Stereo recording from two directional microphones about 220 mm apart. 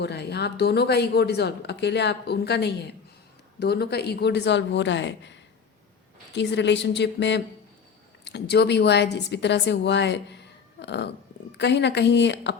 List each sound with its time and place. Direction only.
0.0 s a woman's voice: 50° left (ahead or behind)